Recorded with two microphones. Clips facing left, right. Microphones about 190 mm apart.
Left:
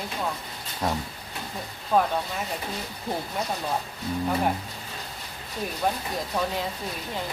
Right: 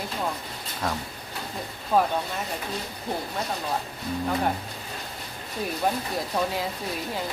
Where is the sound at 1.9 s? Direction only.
5° right (ahead or behind).